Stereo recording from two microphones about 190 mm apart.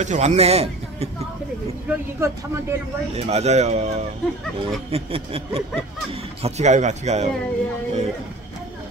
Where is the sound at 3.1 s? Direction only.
35° right (ahead or behind).